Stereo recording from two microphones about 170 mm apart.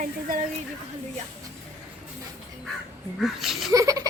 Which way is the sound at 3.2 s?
Centre (ahead or behind).